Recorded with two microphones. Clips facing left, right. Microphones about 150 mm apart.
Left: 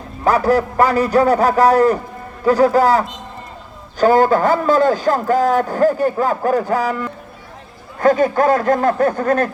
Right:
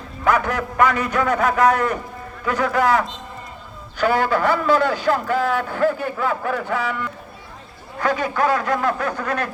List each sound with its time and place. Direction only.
0.3 s a man's voice: 35° left (ahead or behind)